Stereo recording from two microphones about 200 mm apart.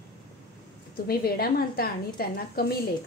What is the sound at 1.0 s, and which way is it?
A woman's voice, 50° left (ahead or behind).